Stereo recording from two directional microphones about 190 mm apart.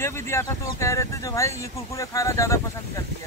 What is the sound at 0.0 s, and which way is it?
Speech, 15° left (ahead or behind).